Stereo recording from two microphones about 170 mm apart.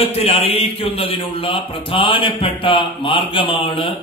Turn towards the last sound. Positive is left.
turn(degrees=30)  # may be behind; listen again after turning